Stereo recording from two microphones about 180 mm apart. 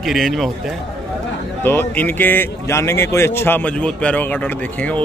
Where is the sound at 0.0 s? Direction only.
Centre (ahead or behind).